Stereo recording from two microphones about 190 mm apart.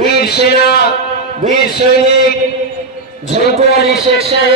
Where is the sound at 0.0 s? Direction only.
60° left (ahead or behind).